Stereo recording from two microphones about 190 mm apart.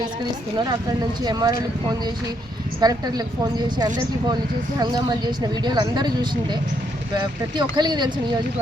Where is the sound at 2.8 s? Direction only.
20° right (ahead or behind).